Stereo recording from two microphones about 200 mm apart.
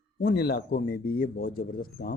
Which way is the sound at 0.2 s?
50° left (ahead or behind).